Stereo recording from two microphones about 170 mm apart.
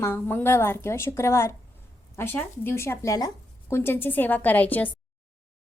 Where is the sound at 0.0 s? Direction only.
15° left (ahead or behind).